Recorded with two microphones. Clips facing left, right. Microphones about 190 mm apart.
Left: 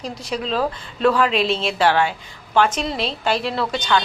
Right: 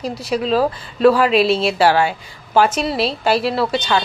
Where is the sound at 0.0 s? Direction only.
5° right (ahead or behind).